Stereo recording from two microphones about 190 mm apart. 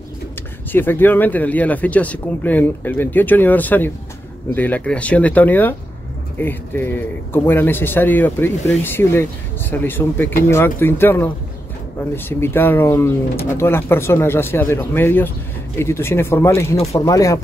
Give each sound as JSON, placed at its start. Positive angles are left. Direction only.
{"t": 0.7, "sound": "speech", "side_deg": 10}